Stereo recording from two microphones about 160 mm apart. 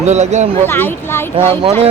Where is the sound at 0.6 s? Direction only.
15° left (ahead or behind).